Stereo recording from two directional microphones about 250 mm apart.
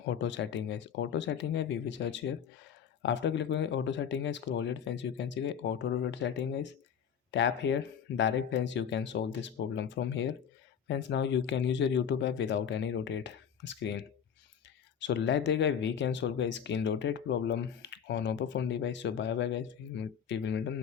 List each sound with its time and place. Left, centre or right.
0.0 s speech: left
15.0 s speech: left